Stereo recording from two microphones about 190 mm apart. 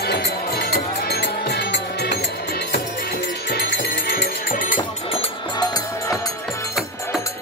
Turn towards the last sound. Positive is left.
turn(degrees=25)  # may be behind; listen again after turning